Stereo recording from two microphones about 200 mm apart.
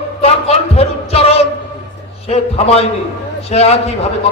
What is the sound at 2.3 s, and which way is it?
A man's voice, 30° left (ahead or behind).